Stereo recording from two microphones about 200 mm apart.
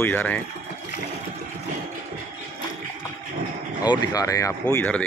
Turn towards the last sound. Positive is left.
turn(degrees=5)  # may be behind; listen again after turning